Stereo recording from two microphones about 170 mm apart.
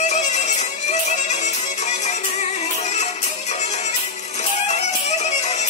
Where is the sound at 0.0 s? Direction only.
40° left (ahead or behind).